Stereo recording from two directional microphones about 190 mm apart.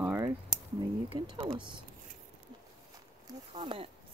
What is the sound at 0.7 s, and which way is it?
Speech, 25° right (ahead or behind).